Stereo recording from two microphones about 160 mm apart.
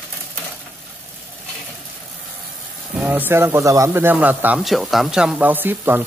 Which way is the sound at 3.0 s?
10° right (ahead or behind).